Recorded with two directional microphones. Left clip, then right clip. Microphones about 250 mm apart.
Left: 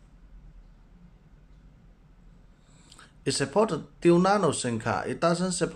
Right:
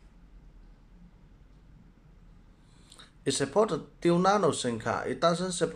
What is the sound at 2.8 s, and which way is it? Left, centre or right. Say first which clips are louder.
Speech: left 1 dB; centre.